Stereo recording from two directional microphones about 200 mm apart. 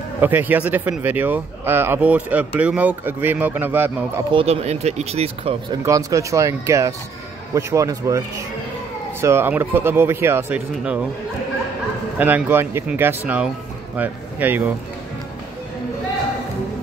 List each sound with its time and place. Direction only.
0.2 s speech: 10° right (ahead or behind)
4.3 s speech: 30° right (ahead or behind)
5.9 s speech: 15° right (ahead or behind)
9.2 s speech: 10° right (ahead or behind)
12.2 s speech: 10° right (ahead or behind)